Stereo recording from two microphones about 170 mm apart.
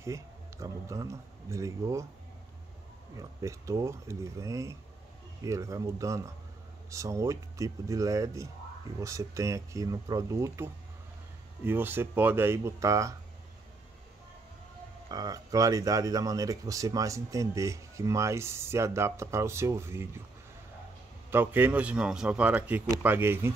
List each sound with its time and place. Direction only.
0.0 s speech: 15° right (ahead or behind)
3.2 s speech: 15° right (ahead or behind)
15.0 s speech: 20° right (ahead or behind)
21.3 s speech: 10° right (ahead or behind)